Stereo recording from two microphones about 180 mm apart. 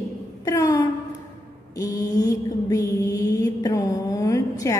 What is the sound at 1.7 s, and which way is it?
Mantra, 20° left (ahead or behind).